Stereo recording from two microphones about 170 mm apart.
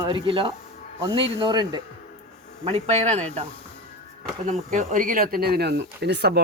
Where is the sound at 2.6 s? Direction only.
35° right (ahead or behind); by 6.4 s 80° right.